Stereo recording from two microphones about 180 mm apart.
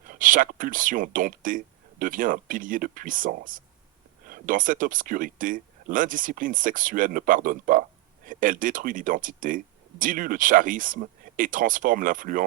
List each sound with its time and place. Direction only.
0.1 s speech: 50° right (ahead or behind)